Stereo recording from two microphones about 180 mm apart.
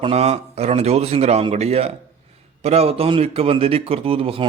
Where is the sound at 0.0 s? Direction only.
35° right (ahead or behind).